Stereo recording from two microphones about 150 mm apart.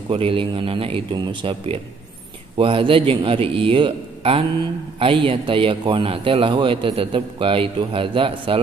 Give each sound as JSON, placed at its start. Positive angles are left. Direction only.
{"t": 0.1, "sound": "a man's voice", "side_deg": -35}